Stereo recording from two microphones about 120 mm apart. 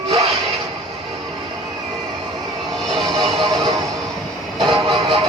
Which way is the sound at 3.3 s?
40° right (ahead or behind).